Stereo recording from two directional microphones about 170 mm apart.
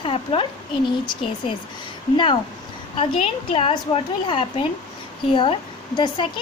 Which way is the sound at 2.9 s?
30° left (ahead or behind).